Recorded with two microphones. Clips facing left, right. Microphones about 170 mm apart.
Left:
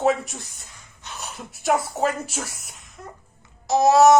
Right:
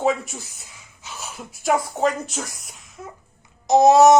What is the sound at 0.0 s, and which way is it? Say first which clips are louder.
Speech: left 1 dB; centre (ahead or behind).